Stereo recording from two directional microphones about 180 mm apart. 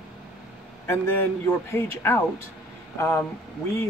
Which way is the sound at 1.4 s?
15° left (ahead or behind).